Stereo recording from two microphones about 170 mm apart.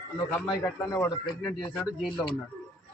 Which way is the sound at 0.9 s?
15° left (ahead or behind).